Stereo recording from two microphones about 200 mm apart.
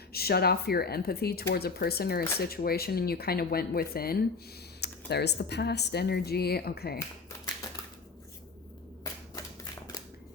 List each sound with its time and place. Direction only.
0.1 s speech: 50° left (ahead or behind)
9.3 s shuffling cards: 15° left (ahead or behind)